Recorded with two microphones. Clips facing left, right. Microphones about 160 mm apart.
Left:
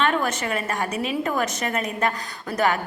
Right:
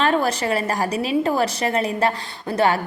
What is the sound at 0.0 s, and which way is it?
A woman's voice, 35° right (ahead or behind).